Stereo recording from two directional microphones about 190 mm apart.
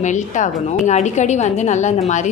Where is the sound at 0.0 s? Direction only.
40° left (ahead or behind).